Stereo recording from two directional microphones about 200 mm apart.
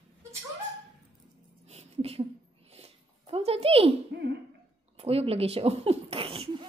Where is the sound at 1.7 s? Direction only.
30° right (ahead or behind).